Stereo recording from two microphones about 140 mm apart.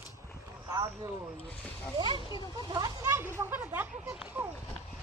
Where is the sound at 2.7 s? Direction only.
25° right (ahead or behind).